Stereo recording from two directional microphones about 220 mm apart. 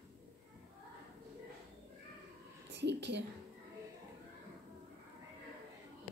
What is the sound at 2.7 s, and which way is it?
Speech, 50° right (ahead or behind).